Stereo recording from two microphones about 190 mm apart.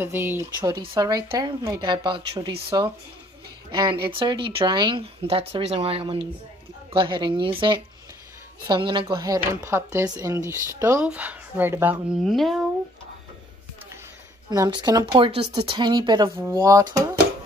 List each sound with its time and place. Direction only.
0.0 s speech: 10° right (ahead or behind)
12.3 s speech: centre (ahead or behind)
14.5 s speech: 20° right (ahead or behind)